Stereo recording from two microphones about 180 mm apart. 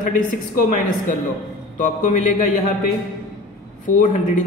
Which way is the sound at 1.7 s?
45° left (ahead or behind).